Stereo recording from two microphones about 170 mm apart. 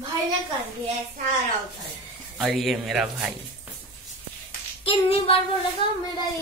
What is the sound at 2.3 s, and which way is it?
A man's voice, centre (ahead or behind).